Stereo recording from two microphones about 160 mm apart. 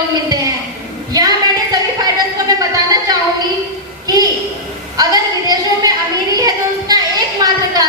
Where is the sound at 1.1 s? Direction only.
25° right (ahead or behind).